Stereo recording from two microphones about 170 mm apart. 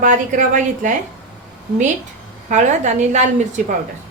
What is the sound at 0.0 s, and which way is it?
Speech, 45° right (ahead or behind).